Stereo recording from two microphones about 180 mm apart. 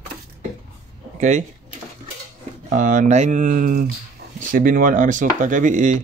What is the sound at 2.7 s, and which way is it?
Speech, 45° right (ahead or behind).